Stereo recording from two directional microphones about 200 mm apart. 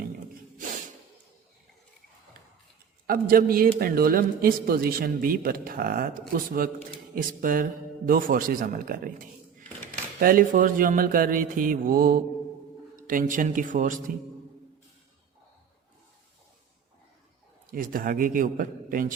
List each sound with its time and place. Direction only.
3.1 s a man's voice: 45° right (ahead or behind)
17.7 s a man's voice: 45° right (ahead or behind)